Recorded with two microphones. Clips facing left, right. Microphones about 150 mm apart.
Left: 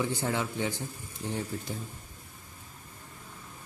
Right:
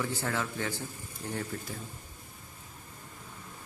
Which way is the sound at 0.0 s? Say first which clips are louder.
Left 3 dB; 15° left (ahead or behind).